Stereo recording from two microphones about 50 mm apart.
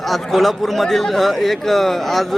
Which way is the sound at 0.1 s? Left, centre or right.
Centre.